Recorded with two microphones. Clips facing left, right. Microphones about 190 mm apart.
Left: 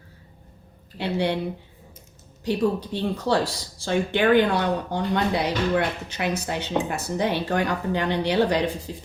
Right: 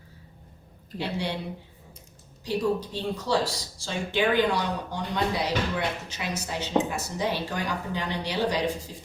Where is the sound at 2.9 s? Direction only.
60° left (ahead or behind).